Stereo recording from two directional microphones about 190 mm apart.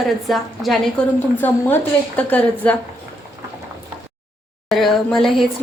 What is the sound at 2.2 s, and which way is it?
Speech, 5° left (ahead or behind).